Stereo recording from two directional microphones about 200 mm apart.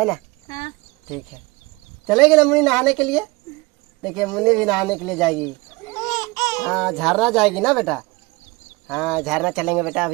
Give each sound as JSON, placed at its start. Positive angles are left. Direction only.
{"t": 2.0, "sound": "speech", "side_deg": 0}
{"t": 5.9, "sound": "babbling", "side_deg": 15}
{"t": 6.7, "sound": "speech", "side_deg": 0}